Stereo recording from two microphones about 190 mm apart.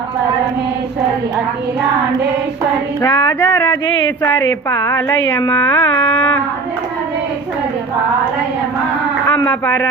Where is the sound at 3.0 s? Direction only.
15° left (ahead or behind).